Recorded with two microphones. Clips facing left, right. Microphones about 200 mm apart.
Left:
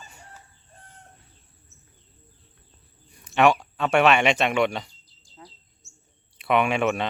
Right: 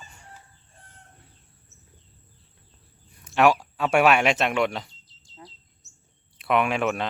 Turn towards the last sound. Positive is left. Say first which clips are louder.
# left 1 dB
turn(degrees=0)  # may be behind; listen again after turning